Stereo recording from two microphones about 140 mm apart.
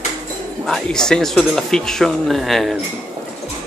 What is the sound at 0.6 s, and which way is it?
Speech, 5° left (ahead or behind).